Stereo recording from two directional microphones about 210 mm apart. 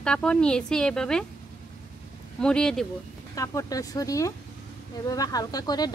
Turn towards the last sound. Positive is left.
turn(degrees=20)  # may be behind; listen again after turning